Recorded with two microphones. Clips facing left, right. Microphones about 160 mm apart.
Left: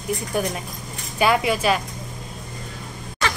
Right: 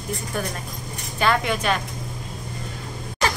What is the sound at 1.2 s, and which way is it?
Speech, 10° left (ahead or behind).